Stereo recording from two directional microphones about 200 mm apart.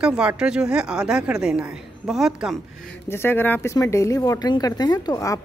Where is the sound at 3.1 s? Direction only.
10° left (ahead or behind).